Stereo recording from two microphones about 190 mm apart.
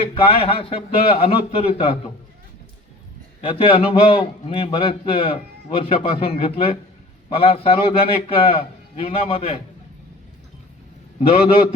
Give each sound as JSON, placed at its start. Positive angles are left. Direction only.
{"t": 0.1, "sound": "a man's voice", "side_deg": 30}
{"t": 3.4, "sound": "a man's voice", "side_deg": 30}